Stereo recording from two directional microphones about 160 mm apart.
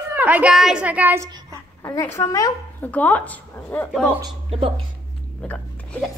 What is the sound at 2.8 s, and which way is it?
Speech, 10° left (ahead or behind).